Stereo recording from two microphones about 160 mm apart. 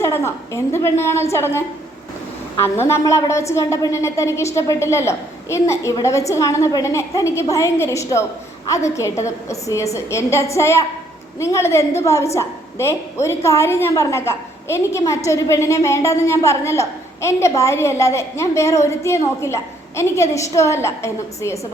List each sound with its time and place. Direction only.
0.0 s a woman's voice: 15° left (ahead or behind)
2.6 s a woman's voice: 15° left (ahead or behind)